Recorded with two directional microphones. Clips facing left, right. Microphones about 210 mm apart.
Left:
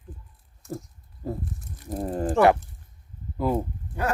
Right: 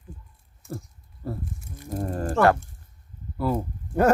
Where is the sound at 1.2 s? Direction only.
15° left (ahead or behind).